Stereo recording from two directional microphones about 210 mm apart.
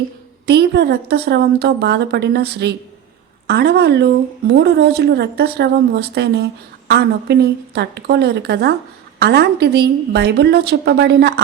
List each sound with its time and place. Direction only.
0.4 s a woman's voice: 55° right (ahead or behind)